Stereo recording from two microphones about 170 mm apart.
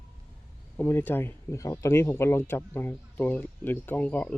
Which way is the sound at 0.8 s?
10° left (ahead or behind).